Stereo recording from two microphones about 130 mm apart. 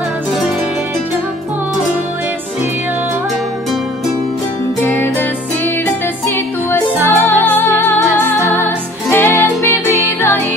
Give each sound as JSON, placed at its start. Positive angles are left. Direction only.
{"t": 4.8, "sound": "music", "side_deg": 15}
{"t": 6.2, "sound": "music", "side_deg": 15}